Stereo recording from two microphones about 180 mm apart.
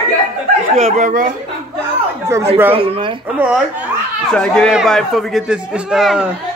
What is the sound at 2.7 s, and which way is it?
Speech, 30° right (ahead or behind).